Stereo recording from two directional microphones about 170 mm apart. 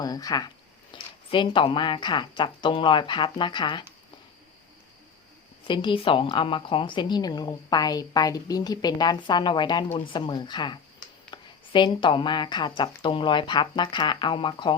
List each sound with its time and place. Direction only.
0.0 s a woman's voice: 20° left (ahead or behind)
5.6 s a woman's voice: 30° left (ahead or behind)